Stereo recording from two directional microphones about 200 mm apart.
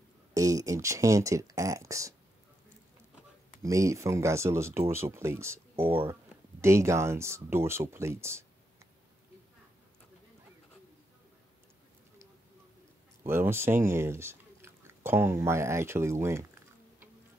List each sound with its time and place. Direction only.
0.3 s a sound: 15° right (ahead or behind)
3.6 s speech: 15° right (ahead or behind)
13.2 s speech: 10° right (ahead or behind)